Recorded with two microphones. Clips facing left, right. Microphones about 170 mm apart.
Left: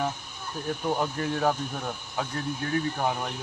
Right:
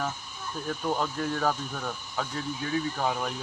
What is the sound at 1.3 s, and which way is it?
Speech, 25° left (ahead or behind).